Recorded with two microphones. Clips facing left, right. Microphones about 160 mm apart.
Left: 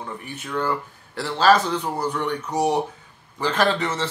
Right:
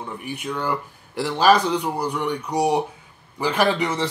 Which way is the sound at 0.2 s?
10° right (ahead or behind).